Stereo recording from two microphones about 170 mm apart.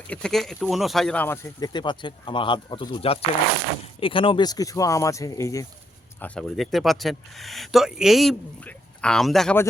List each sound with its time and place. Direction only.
0.1 s speech: 5° left (ahead or behind)
1.5 s speech: 25° left (ahead or behind)
6.1 s speech: 5° left (ahead or behind)